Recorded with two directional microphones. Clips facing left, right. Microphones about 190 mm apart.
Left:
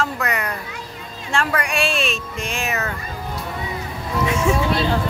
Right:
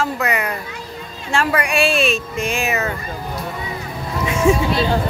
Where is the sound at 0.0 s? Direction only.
5° right (ahead or behind).